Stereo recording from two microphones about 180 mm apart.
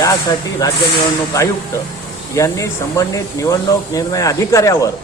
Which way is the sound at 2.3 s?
15° left (ahead or behind).